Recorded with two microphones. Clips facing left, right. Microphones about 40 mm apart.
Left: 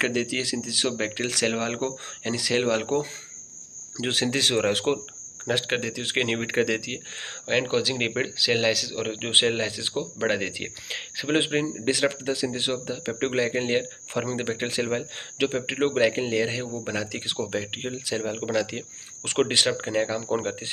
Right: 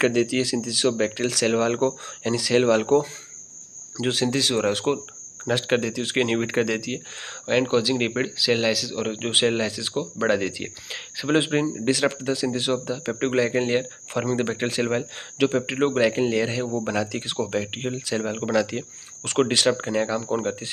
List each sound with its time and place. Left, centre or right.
0.0 s speech: centre
4.1 s speech: left
5.5 s speech: centre
7.4 s speech: left
11.5 s speech: centre
14.8 s speech: centre
15.3 s speech: centre
17.4 s speech: centre
18.5 s speech: centre